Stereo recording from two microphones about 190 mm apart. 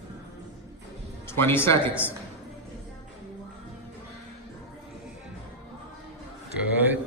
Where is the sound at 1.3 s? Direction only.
10° left (ahead or behind).